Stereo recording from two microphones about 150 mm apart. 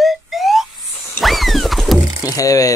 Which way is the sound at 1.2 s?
Centre (ahead or behind).